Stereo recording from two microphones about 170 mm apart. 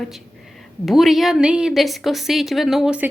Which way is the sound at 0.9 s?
Centre (ahead or behind).